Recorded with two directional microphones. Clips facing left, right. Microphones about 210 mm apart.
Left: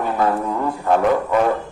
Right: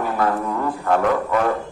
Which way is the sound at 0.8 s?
20° left (ahead or behind).